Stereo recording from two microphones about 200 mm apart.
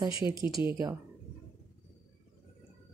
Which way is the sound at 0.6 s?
10° right (ahead or behind).